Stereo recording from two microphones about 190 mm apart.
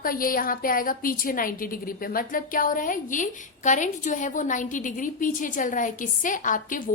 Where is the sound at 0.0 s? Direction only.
50° left (ahead or behind).